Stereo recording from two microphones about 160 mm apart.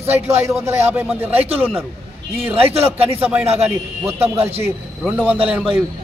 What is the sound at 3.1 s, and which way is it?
Speech, 10° right (ahead or behind).